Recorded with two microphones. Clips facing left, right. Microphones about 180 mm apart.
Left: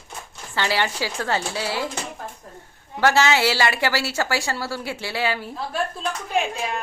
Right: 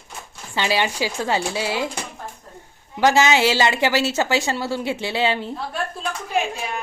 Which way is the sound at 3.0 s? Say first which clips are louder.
Right 2 dB; 15° right (ahead or behind).